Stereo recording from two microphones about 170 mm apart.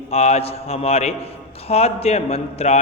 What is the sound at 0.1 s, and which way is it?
A man's voice, 35° left (ahead or behind).